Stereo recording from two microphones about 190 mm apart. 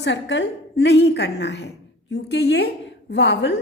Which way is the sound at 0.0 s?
70° left (ahead or behind).